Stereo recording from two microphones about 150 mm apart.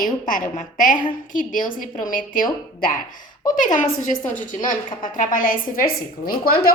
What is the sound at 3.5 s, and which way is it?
A woman's voice, 60° left (ahead or behind).